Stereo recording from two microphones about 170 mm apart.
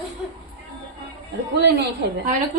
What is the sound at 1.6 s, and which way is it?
Speech, 75° right (ahead or behind).